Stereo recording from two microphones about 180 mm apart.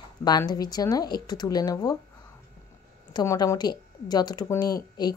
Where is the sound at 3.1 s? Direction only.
20° left (ahead or behind).